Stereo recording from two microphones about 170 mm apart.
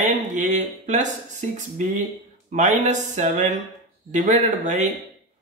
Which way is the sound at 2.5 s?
45° right (ahead or behind).